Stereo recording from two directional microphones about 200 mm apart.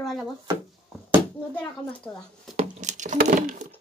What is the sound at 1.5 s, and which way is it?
Speech, 5° left (ahead or behind).